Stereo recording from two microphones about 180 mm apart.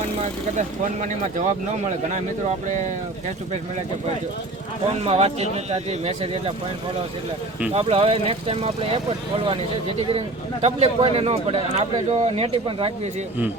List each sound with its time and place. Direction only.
0.2 s a man's voice: 40° right (ahead or behind)
5.0 s speech: 35° right (ahead or behind)
7.7 s speech: 35° right (ahead or behind)
10.0 s speech: 35° right (ahead or behind)